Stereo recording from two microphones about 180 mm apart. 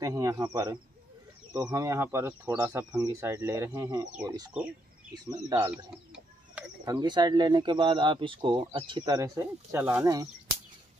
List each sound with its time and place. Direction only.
0.0 s speech: 20° right (ahead or behind)
6.8 s speech: 20° right (ahead or behind)